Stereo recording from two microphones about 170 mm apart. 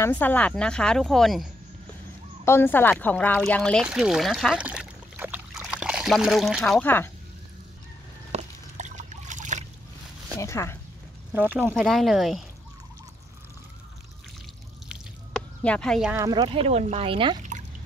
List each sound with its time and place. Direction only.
0.0 s speech: 10° left (ahead or behind)
2.4 s speech: 15° left (ahead or behind)
3.8 s pour: 5° right (ahead or behind)
8.3 s a sound: 45° right (ahead or behind)
10.4 s speech: 15° left (ahead or behind)
11.3 s speech: 10° right (ahead or behind)
11.7 s speech: centre (ahead or behind)
14.9 s drip: 5° left (ahead or behind)
16.1 s speech: 15° right (ahead or behind)
16.3 s speech: 35° right (ahead or behind)